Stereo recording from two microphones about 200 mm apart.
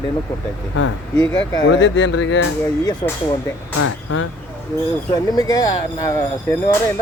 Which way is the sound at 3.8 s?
90° left.